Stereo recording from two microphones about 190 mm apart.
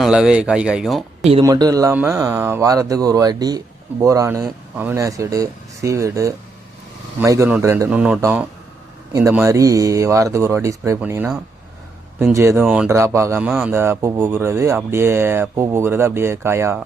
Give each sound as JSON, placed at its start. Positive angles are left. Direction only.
{"t": 0.0, "sound": "speech", "side_deg": -5}
{"t": 1.2, "sound": "speech", "side_deg": -30}
{"t": 1.5, "sound": "speech", "side_deg": -20}
{"t": 13.5, "sound": "speech", "side_deg": 0}
{"t": 13.7, "sound": "speech", "side_deg": -15}